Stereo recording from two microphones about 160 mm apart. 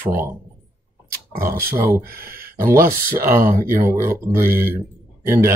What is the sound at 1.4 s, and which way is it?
Speech, 15° right (ahead or behind).